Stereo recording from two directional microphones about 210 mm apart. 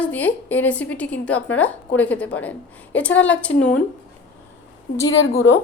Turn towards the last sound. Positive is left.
turn(degrees=60)  # may be behind; listen again after turning